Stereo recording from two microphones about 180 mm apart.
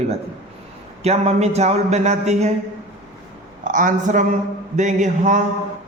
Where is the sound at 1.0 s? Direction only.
35° right (ahead or behind).